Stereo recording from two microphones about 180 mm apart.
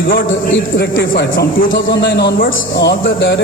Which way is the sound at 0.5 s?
65° left (ahead or behind).